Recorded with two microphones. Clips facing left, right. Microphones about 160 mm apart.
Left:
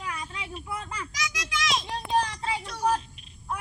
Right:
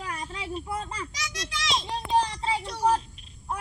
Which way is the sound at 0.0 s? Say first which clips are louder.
Right 1 dB; 40° right (ahead or behind).